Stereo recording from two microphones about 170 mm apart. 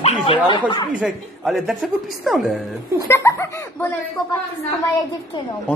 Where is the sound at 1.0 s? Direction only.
Centre (ahead or behind).